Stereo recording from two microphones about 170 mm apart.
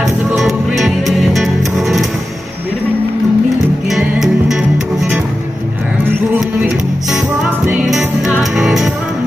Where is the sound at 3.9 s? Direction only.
Centre (ahead or behind).